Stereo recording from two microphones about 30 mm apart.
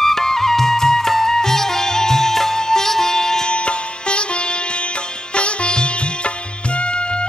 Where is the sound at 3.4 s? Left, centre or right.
Left.